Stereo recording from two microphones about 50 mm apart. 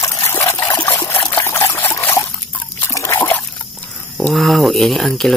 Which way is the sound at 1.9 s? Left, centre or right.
Left.